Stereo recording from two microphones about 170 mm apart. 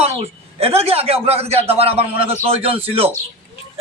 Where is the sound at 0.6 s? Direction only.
35° right (ahead or behind).